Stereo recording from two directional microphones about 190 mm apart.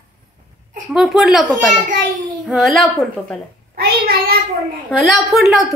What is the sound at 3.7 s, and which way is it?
Speech, 50° right (ahead or behind).